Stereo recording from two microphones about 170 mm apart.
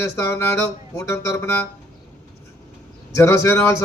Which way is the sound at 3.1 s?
15° left (ahead or behind).